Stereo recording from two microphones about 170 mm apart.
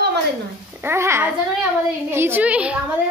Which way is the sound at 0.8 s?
15° right (ahead or behind).